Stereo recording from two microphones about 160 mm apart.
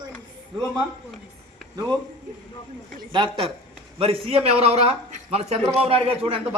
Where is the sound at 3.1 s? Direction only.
30° right (ahead or behind).